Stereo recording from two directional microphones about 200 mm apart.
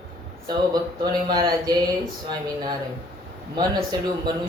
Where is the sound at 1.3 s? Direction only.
20° right (ahead or behind).